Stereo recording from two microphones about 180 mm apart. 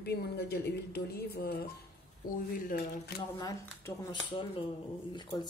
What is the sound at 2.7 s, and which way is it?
Speech, 55° left (ahead or behind).